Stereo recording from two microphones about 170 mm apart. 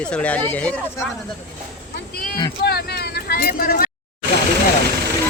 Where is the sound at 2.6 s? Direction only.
65° left (ahead or behind).